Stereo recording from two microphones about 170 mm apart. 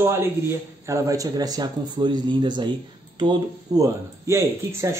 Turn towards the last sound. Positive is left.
turn(degrees=-15)  # may be behind; listen again after turning